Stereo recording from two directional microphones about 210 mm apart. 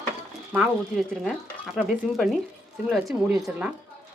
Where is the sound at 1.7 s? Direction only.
Centre (ahead or behind).